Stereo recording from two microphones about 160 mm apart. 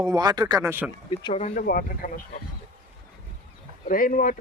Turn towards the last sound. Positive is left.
turn(degrees=55)  # may be behind; listen again after turning